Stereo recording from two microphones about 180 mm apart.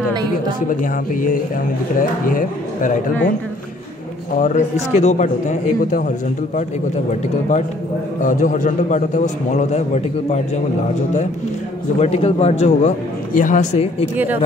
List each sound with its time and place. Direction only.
2.0 s a man's voice: 50° left (ahead or behind)
4.4 s a man's voice: 40° left (ahead or behind)
12.0 s a man's voice: 35° left (ahead or behind)
14.1 s speech: 10° right (ahead or behind)